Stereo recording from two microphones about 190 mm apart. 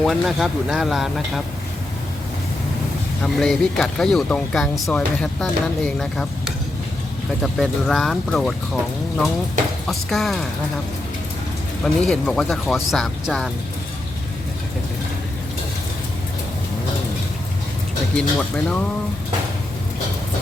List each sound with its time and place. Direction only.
0.0 s speech: centre (ahead or behind)
3.2 s speech: centre (ahead or behind)
9.8 s speech: centre (ahead or behind)
11.9 s speech: 5° left (ahead or behind)
18.2 s speech: 5° left (ahead or behind)